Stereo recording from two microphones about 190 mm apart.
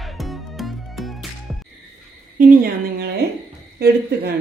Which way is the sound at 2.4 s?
50° right (ahead or behind).